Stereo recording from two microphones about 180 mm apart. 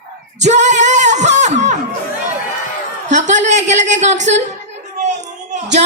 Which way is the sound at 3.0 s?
40° right (ahead or behind).